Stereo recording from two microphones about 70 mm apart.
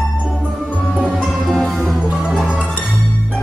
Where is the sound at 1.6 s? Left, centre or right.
Centre.